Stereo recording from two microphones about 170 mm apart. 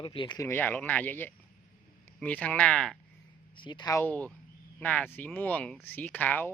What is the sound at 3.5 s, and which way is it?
Speech, 25° left (ahead or behind).